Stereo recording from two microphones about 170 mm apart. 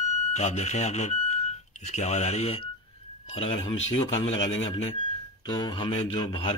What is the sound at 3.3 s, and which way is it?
Speech, 30° left (ahead or behind).